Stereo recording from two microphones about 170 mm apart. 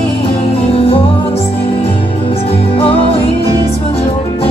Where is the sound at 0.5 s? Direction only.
35° left (ahead or behind).